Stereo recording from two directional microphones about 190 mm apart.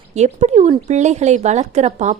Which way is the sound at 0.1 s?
35° right (ahead or behind).